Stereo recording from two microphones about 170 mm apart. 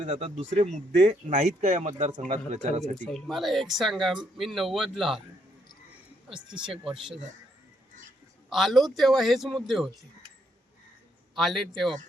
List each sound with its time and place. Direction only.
0.0 s speech: 40° right (ahead or behind)
2.9 s speech: 5° left (ahead or behind)
6.3 s speech: 5° right (ahead or behind)
8.4 s speech: centre (ahead or behind)
11.3 s speech: centre (ahead or behind)